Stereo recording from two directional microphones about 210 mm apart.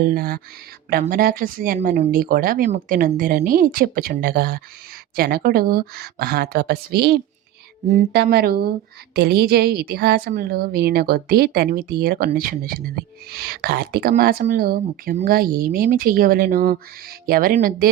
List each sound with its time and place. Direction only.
0.0 s a woman's voice: 45° right (ahead or behind)